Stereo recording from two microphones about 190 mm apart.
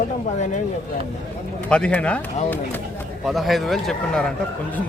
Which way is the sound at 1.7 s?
5° left (ahead or behind).